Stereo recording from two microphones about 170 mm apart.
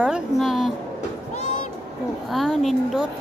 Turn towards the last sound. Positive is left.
turn(degrees=0)  # may be behind; listen again after turning